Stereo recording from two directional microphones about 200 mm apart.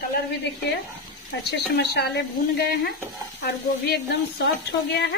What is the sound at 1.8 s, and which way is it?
Speech, 55° left (ahead or behind).